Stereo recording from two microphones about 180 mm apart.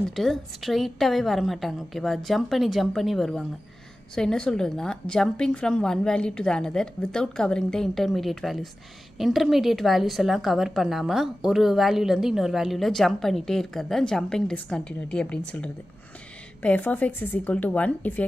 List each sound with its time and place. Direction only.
0.1 s a woman's voice: centre (ahead or behind)